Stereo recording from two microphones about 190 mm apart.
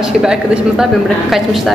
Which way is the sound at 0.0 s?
5° right (ahead or behind).